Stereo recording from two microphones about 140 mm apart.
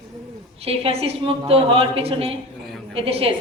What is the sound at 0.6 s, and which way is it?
A woman's voice, 45° right (ahead or behind).